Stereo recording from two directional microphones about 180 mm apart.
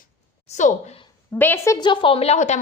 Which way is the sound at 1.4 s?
15° left (ahead or behind).